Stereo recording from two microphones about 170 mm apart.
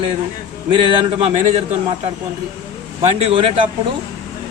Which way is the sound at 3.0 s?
35° right (ahead or behind).